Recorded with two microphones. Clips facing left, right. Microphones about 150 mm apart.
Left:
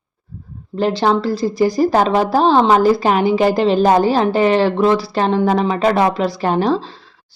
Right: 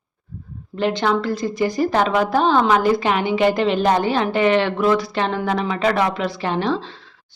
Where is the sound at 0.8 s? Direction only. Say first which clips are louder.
Left 4 dB; 35° left (ahead or behind).